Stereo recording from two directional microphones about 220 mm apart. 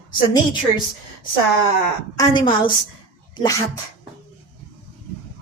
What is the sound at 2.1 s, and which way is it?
Speech, 20° left (ahead or behind).